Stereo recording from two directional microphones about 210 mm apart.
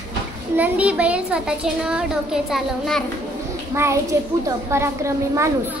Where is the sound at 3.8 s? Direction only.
10° right (ahead or behind).